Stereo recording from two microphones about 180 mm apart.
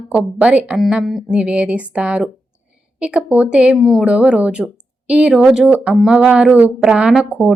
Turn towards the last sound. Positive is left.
turn(degrees=0)  # may be behind; listen again after turning